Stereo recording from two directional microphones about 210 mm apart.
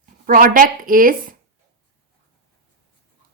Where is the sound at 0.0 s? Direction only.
45° right (ahead or behind).